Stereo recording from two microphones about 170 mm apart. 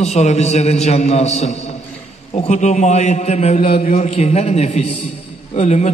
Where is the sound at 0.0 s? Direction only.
40° left (ahead or behind).